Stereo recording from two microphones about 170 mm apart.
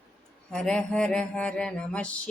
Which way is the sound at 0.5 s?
5° left (ahead or behind).